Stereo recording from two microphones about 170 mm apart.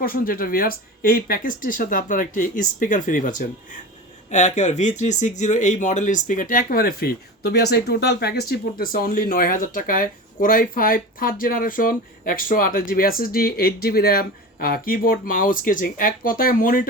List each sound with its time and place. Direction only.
0.0 s speech: 60° left (ahead or behind)